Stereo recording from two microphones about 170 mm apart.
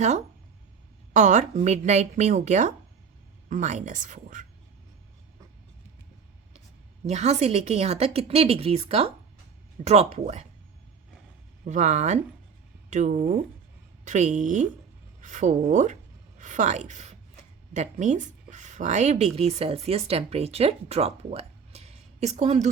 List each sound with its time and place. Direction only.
1.1 s speech: 45° right (ahead or behind)
7.1 s a woman's voice: 40° right (ahead or behind)
11.6 s a woman's voice: 45° right (ahead or behind)